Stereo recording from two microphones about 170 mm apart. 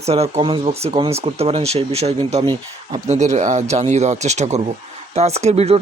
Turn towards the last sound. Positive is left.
turn(degrees=-40)  # may be behind; listen again after turning